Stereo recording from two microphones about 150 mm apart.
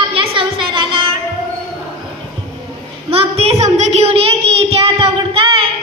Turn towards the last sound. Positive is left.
turn(degrees=-40)  # may be behind; listen again after turning